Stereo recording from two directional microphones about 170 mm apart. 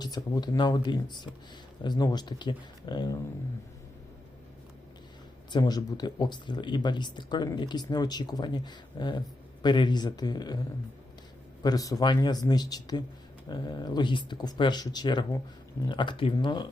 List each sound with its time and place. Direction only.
0.0 s speech: 25° left (ahead or behind)
5.5 s speech: 25° left (ahead or behind)